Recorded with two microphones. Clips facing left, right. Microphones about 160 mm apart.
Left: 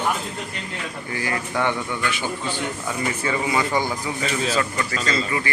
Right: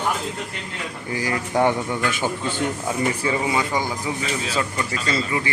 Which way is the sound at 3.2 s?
25° right (ahead or behind).